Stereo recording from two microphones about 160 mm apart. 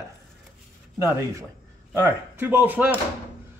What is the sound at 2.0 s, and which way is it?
Speech, 15° right (ahead or behind).